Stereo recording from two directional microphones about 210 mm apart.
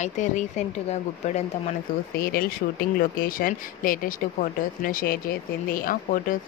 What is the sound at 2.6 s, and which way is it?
Speech, 45° left (ahead or behind).